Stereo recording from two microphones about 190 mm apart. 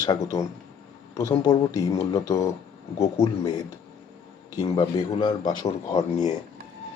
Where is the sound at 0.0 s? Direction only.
20° left (ahead or behind).